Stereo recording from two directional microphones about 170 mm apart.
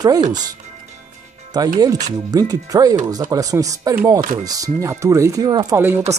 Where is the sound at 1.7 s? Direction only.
20° right (ahead or behind).